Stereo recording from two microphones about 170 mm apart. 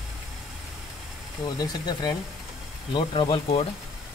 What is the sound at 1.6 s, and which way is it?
Speech, 25° left (ahead or behind).